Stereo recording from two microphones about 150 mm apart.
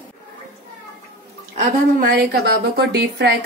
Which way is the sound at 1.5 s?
70° right (ahead or behind).